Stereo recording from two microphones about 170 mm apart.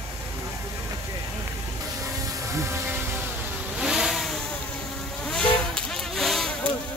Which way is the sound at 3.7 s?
5° right (ahead or behind).